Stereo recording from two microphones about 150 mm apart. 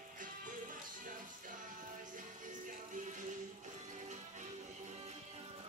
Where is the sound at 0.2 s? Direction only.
65° right (ahead or behind).